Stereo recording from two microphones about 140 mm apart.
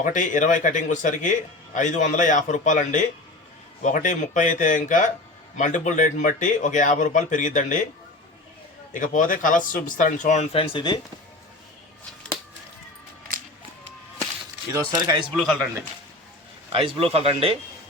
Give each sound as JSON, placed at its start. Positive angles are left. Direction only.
{"t": 0.0, "sound": "a man's voice", "side_deg": 65}
{"t": 8.9, "sound": "a man's voice", "side_deg": 65}
{"t": 14.7, "sound": "speech", "side_deg": -30}
{"t": 16.7, "sound": "speech", "side_deg": -40}